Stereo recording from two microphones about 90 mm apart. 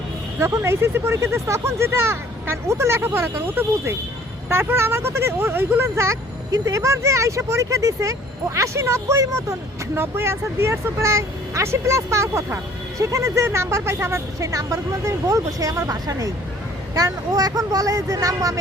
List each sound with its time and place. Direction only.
0.3 s speech: 30° right (ahead or behind)